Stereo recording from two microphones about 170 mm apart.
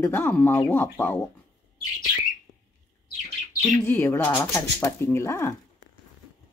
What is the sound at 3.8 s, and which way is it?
Speech, 15° left (ahead or behind).